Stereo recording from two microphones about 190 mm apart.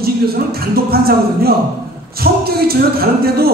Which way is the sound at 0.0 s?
55° right (ahead or behind).